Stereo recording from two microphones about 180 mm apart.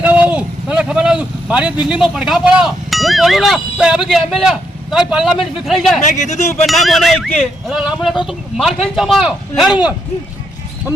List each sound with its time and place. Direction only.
0.0 s speech: 10° right (ahead or behind)
6.1 s speech: 40° left (ahead or behind)
6.7 s speech: centre (ahead or behind)